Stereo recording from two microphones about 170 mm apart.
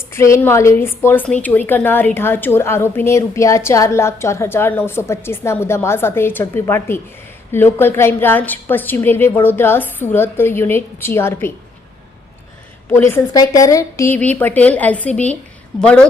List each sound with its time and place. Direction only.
0.1 s a woman's voice: 15° left (ahead or behind)
13.0 s a woman's voice: 15° left (ahead or behind)